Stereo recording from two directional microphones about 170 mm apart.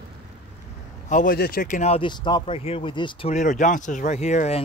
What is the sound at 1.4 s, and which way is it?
Speech, 60° left (ahead or behind).